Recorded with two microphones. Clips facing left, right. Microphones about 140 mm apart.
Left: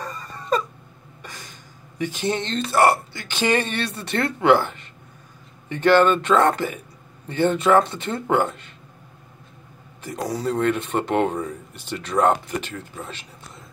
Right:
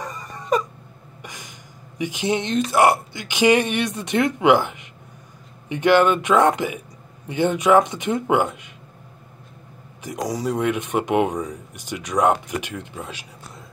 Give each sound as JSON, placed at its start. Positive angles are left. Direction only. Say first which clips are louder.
{"t": 0.0, "sound": "a sound", "louder": "right 1 dB", "side_deg": -15}
{"t": 1.2, "sound": "speech", "louder": "right 1 dB", "side_deg": -15}
{"t": 10.0, "sound": "speech", "louder": "right 1 dB", "side_deg": -15}